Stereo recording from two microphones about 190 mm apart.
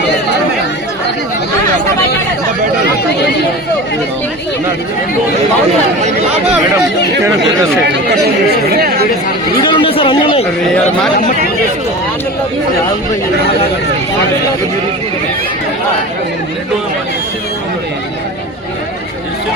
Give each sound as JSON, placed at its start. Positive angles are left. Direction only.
{"t": 8.7, "sound": "speech", "side_deg": -55}
{"t": 9.6, "sound": "speech", "side_deg": 25}